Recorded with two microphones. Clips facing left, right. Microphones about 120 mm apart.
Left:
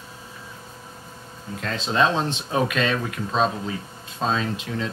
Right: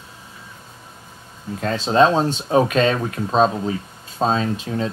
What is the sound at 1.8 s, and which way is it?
Speech, 35° right (ahead or behind).